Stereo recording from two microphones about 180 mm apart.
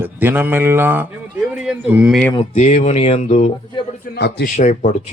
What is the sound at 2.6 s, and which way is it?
Speech, 40° left (ahead or behind).